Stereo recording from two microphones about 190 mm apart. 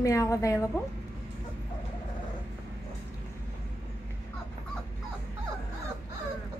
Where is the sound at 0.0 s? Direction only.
15° left (ahead or behind).